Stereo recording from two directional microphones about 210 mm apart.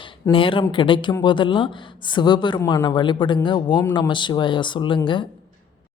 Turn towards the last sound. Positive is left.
turn(degrees=25)  # may be behind; listen again after turning